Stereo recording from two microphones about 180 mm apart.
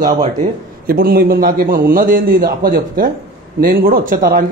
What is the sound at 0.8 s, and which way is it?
A man's voice, 55° right (ahead or behind).